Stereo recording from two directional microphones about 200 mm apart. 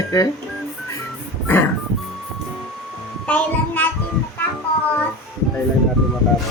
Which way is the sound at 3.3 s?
5° left (ahead or behind).